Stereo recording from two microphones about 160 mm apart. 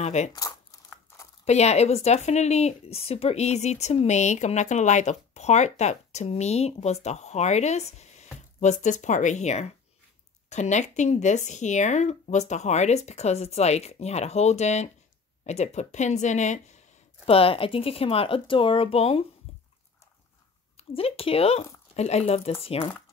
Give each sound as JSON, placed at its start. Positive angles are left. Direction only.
{"t": 0.0, "sound": "speech", "side_deg": 45}
{"t": 0.3, "sound": "crumpling", "side_deg": 25}
{"t": 1.4, "sound": "speech", "side_deg": 45}
{"t": 19.5, "sound": "a sound", "side_deg": 40}
{"t": 20.7, "sound": "speech", "side_deg": 35}